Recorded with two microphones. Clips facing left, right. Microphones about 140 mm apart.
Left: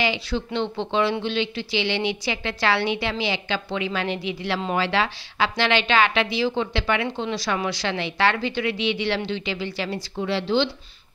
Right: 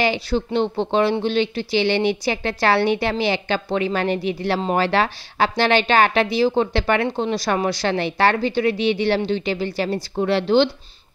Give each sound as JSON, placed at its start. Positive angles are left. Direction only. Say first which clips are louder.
{"t": 0.0, "sound": "a woman's voice", "louder": "right 4 dB", "side_deg": -45}
{"t": 10.1, "sound": "speech", "louder": "right 6 dB", "side_deg": -55}